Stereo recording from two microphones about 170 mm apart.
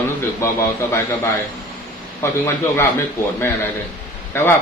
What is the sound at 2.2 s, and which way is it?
Speech, 15° left (ahead or behind).